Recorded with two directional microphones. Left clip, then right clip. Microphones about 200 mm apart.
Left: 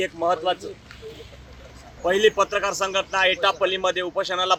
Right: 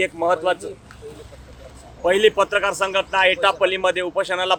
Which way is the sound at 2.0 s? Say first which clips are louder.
Right 3 dB; 15° right (ahead or behind).